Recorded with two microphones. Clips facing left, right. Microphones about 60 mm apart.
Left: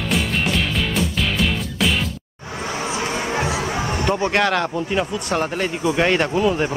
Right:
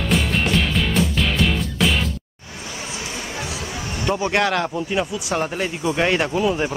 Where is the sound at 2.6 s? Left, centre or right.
Left.